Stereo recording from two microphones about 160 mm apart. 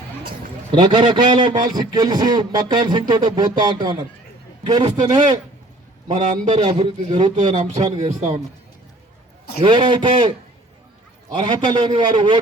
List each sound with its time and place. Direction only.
0.7 s a man's voice: 30° right (ahead or behind)
6.5 s a man's voice: 30° right (ahead or behind)
9.6 s a man's voice: 30° right (ahead or behind)
11.3 s a man's voice: 30° right (ahead or behind)